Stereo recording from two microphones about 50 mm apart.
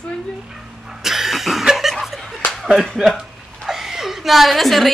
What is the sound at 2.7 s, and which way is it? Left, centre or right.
A woman's voice, centre.